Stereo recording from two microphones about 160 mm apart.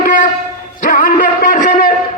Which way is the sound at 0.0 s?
55° left (ahead or behind).